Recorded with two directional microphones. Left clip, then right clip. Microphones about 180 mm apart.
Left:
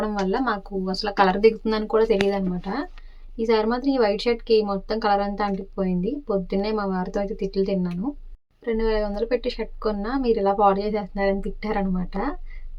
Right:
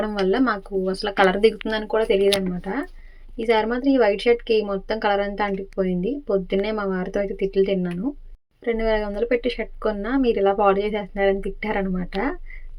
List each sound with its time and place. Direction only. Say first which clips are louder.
0.0 s a woman's voice: right 3 dB; 15° right (ahead or behind)
3.3 s a woman's voice: right 1 dB; 10° right (ahead or behind)